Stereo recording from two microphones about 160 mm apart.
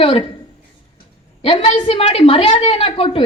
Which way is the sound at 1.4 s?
35° left (ahead or behind).